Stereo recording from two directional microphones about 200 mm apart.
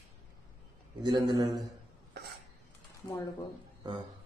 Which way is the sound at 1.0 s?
20° right (ahead or behind).